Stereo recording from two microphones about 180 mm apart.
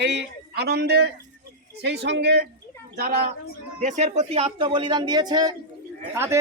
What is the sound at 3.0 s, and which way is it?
Speech, 55° right (ahead or behind).